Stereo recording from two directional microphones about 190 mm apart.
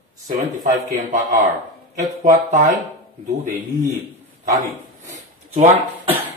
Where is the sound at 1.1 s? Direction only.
40° right (ahead or behind).